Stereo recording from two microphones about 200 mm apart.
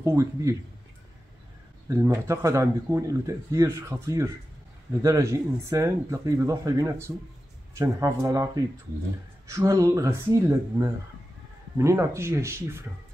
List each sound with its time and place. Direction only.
0.0 s speech: 15° right (ahead or behind)
1.9 s speech: 15° right (ahead or behind)